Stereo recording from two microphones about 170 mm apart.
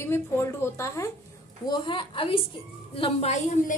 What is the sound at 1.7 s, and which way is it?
A woman's voice, 30° left (ahead or behind).